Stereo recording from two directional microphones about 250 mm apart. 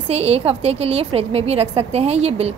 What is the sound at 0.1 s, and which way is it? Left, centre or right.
A woman's voice, right.